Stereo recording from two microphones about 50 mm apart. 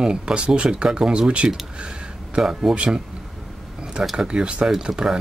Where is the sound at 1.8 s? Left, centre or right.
Centre.